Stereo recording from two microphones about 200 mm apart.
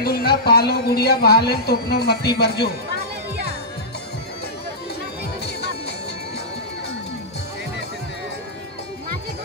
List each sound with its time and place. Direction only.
0.0 s speech: 50° left (ahead or behind)
5.4 s music: 55° left (ahead or behind)